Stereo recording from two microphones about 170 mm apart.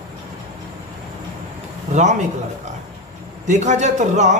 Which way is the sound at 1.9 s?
45° right (ahead or behind).